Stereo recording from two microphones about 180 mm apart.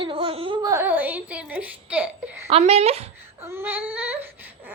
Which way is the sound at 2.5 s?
35° right (ahead or behind).